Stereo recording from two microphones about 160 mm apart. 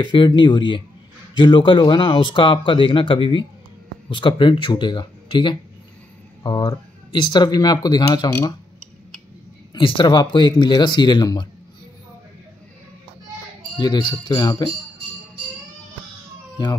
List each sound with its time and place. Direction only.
0.0 s speech: 30° left (ahead or behind)
9.8 s speech: 30° left (ahead or behind)
13.7 s speech: 25° left (ahead or behind)